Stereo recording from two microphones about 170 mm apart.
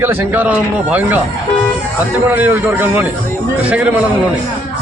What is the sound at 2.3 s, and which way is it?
A man's voice, 10° right (ahead or behind).